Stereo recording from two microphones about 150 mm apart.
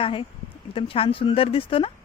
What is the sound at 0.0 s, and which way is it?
Speech, 35° left (ahead or behind).